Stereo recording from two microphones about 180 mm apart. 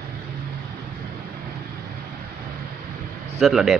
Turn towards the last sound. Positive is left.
turn(degrees=0)  # may be behind; listen again after turning